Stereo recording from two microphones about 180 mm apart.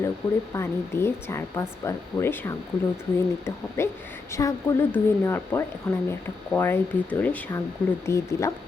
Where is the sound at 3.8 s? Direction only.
15° left (ahead or behind).